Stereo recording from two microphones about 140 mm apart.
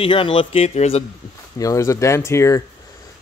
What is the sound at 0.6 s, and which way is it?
Speech, 50° left (ahead or behind).